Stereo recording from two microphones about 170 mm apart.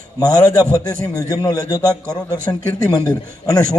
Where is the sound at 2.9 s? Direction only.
20° left (ahead or behind).